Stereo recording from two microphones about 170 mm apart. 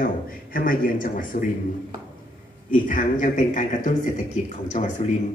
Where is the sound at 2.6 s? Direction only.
50° left (ahead or behind).